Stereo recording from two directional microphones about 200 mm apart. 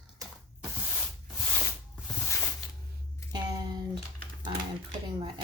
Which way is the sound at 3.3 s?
20° right (ahead or behind).